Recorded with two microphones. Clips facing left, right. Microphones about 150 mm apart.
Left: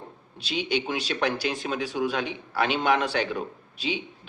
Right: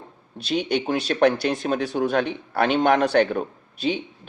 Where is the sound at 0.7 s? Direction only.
45° right (ahead or behind).